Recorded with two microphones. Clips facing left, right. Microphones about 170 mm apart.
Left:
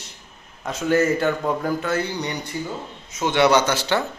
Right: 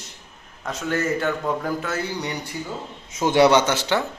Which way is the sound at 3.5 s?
20° right (ahead or behind).